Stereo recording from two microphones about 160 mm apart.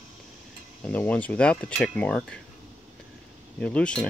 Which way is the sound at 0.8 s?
10° left (ahead or behind).